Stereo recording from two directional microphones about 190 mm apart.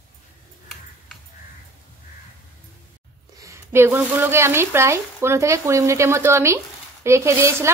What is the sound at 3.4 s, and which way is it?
Speech, 15° right (ahead or behind).